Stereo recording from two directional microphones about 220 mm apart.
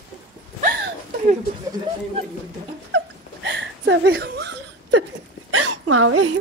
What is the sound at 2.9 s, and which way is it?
Giggle, 55° right (ahead or behind).